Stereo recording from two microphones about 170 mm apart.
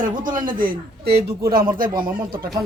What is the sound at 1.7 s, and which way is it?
Speech, 55° right (ahead or behind).